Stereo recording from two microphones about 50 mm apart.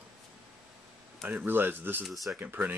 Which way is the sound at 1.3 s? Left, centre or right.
Right.